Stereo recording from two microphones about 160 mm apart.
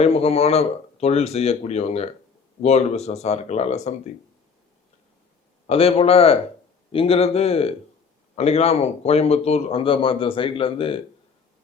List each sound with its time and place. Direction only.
0.0 s speech: 40° left (ahead or behind)
5.6 s speech: 40° left (ahead or behind)